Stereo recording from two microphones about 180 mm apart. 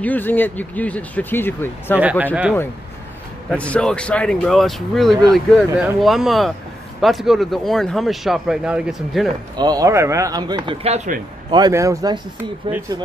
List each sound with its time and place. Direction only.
0.0 s speech: 10° left (ahead or behind)
2.0 s speech: 5° right (ahead or behind)
3.4 s speech: 5° left (ahead or behind)
9.6 s speech: 20° right (ahead or behind)